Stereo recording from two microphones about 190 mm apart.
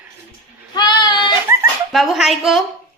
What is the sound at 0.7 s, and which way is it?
Speech, 20° left (ahead or behind).